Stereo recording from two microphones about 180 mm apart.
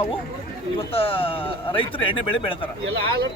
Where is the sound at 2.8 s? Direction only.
70° right (ahead or behind).